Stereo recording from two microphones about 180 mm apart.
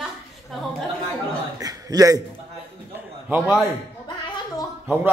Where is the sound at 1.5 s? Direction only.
20° right (ahead or behind).